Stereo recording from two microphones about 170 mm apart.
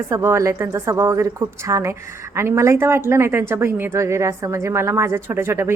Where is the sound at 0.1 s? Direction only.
15° right (ahead or behind).